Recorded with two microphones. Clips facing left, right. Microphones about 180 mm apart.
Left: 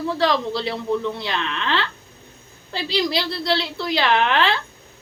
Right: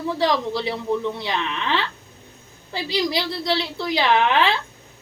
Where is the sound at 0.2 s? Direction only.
15° right (ahead or behind).